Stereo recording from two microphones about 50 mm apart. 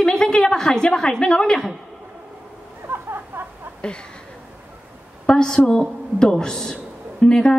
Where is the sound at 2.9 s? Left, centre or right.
Right.